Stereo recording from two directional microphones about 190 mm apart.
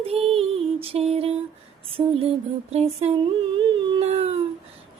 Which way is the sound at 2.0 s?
25° right (ahead or behind).